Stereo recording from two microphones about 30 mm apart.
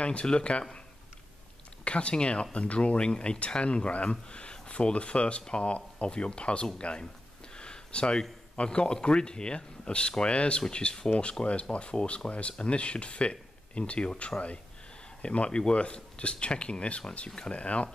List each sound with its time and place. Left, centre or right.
0.0 s speech: left
1.9 s speech: left